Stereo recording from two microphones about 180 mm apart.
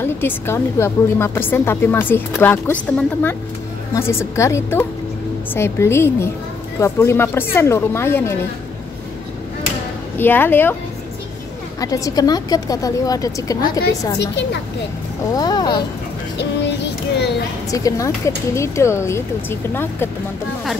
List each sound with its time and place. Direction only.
0.0 s a woman's voice: 15° left (ahead or behind)
10.1 s a woman's voice: 10° left (ahead or behind)
11.8 s a woman's voice: 20° left (ahead or behind)
14.1 s a woman's voice: 70° left (ahead or behind)
15.3 s a woman's voice: 20° left (ahead or behind)
17.6 s a woman's voice: 20° left (ahead or behind)